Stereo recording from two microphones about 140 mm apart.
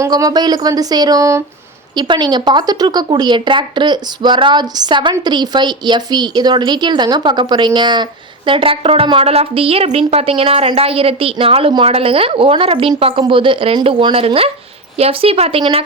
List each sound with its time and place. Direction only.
0.0 s speech: 25° right (ahead or behind)
2.0 s speech: 30° right (ahead or behind)